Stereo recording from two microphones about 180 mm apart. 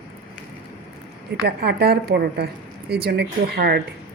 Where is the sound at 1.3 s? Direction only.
65° right (ahead or behind).